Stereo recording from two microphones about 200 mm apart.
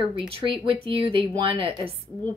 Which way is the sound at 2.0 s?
10° left (ahead or behind).